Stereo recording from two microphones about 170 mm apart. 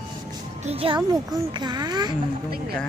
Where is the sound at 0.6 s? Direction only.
35° right (ahead or behind).